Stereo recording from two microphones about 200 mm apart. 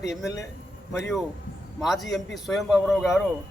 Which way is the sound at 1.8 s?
Centre (ahead or behind).